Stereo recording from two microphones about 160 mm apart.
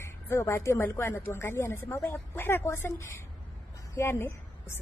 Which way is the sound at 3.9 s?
15° left (ahead or behind).